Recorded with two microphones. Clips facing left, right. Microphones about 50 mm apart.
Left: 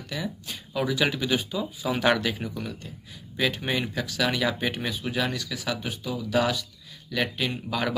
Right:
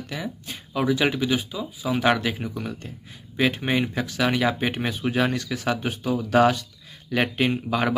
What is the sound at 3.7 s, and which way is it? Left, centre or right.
Speech, right.